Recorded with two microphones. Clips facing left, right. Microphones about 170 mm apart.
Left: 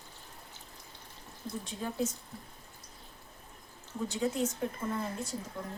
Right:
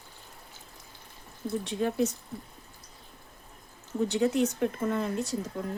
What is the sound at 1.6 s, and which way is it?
Speech, 70° right (ahead or behind).